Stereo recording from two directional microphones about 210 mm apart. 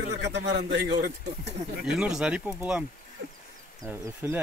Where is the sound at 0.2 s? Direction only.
55° right (ahead or behind).